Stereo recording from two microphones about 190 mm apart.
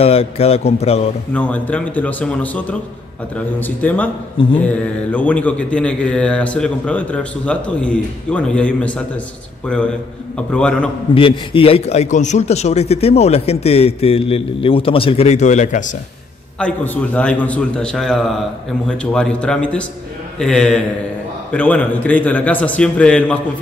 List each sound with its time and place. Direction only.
0.0 s a man's voice: 30° left (ahead or behind)
1.3 s a man's voice: 10° left (ahead or behind)
11.1 s a man's voice: 30° left (ahead or behind)
16.5 s a man's voice: 5° left (ahead or behind)